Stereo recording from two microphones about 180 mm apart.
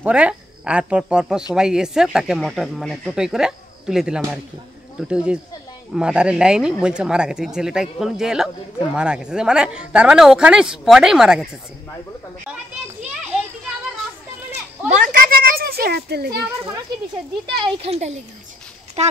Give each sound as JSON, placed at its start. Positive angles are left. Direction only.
{"t": 0.0, "sound": "speech", "side_deg": -5}
{"t": 14.8, "sound": "children playing", "side_deg": -5}
{"t": 15.2, "sound": "a sound", "side_deg": -55}
{"t": 17.5, "sound": "speech", "side_deg": -30}